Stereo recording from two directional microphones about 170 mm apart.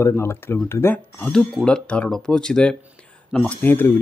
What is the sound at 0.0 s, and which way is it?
Speech, 15° left (ahead or behind).